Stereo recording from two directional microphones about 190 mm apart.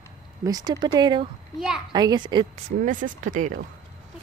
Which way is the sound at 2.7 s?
45° right (ahead or behind).